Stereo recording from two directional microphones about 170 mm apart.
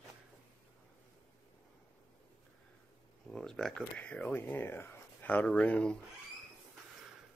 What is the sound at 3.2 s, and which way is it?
Speech, 5° left (ahead or behind).